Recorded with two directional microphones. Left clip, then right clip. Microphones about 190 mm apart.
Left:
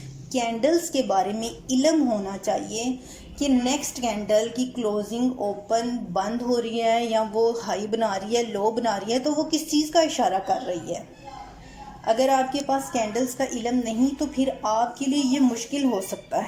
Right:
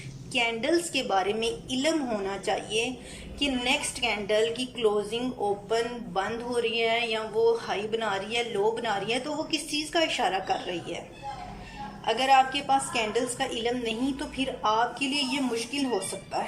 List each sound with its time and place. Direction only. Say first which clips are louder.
0.3 s a woman's voice: left 3 dB; 35° left (ahead or behind)
12.0 s a woman's voice: left 1 dB; 35° left (ahead or behind)